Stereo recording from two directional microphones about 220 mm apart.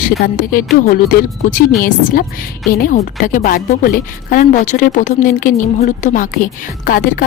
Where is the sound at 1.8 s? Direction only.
40° left (ahead or behind).